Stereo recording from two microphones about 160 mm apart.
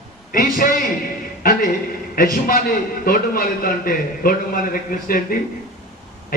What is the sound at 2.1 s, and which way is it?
A man's voice, 65° left (ahead or behind).